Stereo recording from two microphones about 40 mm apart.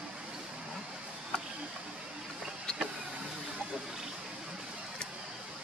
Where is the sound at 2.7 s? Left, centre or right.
Centre.